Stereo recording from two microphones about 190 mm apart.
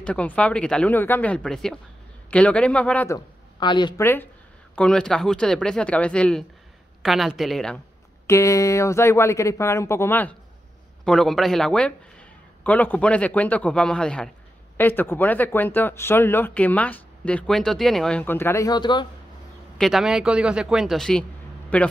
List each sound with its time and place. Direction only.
0.0 s speech: 5° left (ahead or behind)
3.5 s speech: 25° left (ahead or behind)
4.0 s a man's voice: 10° left (ahead or behind)
8.3 s a man's voice: 15° left (ahead or behind)
19.8 s a man's voice: centre (ahead or behind)